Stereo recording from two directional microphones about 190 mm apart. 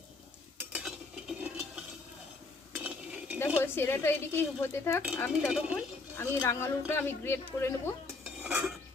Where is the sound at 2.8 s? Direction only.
5° right (ahead or behind).